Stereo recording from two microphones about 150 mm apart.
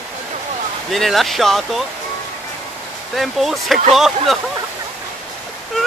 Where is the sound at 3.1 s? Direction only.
Centre (ahead or behind).